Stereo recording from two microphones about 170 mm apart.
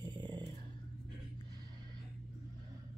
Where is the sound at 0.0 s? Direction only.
25° right (ahead or behind).